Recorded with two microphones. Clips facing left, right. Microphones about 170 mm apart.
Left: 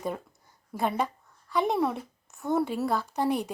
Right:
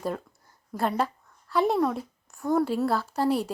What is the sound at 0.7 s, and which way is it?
A woman's voice, 5° left (ahead or behind).